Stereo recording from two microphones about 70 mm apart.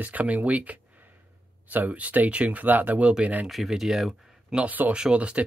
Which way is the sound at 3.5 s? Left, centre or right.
Centre.